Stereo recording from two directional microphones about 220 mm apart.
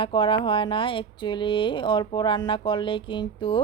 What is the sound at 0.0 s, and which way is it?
Speech, 25° left (ahead or behind).